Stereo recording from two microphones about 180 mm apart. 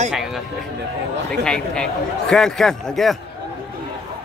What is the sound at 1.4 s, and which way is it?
A man's voice, 5° left (ahead or behind).